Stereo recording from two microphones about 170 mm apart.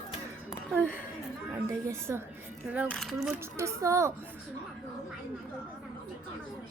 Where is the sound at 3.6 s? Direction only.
15° right (ahead or behind).